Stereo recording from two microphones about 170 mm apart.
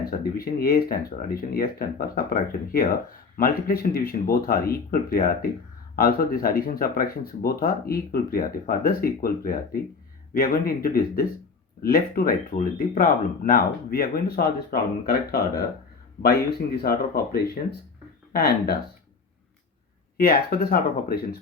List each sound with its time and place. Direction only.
0.0 s speech: 60° left (ahead or behind)
20.1 s speech: 60° left (ahead or behind)